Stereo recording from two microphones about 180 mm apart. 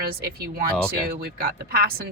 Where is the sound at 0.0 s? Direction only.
55° right (ahead or behind).